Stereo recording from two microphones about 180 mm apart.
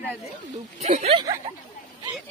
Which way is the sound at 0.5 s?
40° right (ahead or behind).